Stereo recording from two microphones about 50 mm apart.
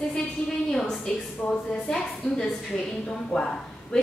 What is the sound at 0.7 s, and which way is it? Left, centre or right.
A woman's voice, centre.